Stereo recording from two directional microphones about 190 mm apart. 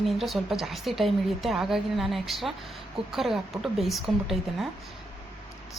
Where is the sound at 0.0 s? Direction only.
Centre (ahead or behind).